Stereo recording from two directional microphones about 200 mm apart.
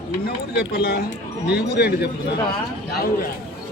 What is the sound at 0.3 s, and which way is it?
Speech, 55° left (ahead or behind).